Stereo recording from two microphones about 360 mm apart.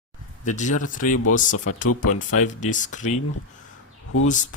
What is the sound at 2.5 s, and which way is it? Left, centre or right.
Speech, left.